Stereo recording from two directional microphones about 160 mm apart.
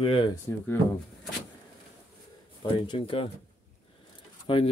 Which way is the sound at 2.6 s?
30° left (ahead or behind).